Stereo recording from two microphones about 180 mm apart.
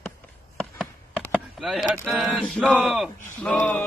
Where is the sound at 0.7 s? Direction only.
5° left (ahead or behind).